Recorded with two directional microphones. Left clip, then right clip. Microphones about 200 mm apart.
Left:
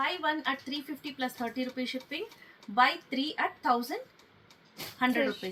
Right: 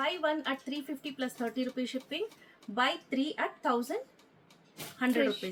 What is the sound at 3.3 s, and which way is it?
Speech, 25° right (ahead or behind).